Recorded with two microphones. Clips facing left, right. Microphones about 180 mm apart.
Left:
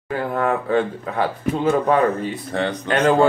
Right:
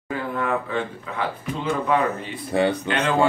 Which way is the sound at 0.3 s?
45° left (ahead or behind).